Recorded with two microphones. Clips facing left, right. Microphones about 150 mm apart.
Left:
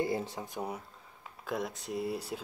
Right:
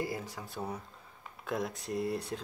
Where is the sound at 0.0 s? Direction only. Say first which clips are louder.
Left 4 dB; 25° left (ahead or behind).